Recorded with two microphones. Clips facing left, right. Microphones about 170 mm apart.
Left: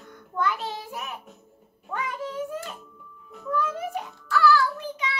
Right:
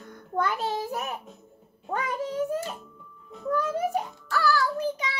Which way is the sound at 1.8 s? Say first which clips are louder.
Right 2 dB; 40° right (ahead or behind).